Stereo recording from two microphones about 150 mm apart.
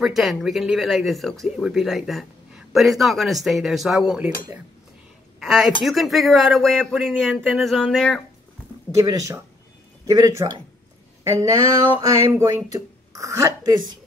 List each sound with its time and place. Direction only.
0.0 s speech: centre (ahead or behind)
5.4 s speech: 5° right (ahead or behind)
8.9 s a sound: 20° right (ahead or behind)